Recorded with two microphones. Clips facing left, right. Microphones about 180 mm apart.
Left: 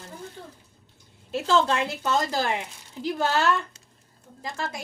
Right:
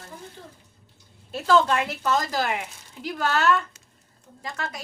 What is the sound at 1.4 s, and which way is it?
A woman's voice, 30° left (ahead or behind).